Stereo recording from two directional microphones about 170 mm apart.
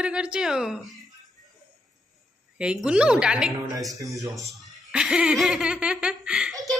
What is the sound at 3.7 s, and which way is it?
Speech, 20° right (ahead or behind).